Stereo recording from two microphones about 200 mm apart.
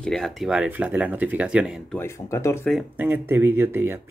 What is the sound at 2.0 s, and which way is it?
Speech, 15° left (ahead or behind).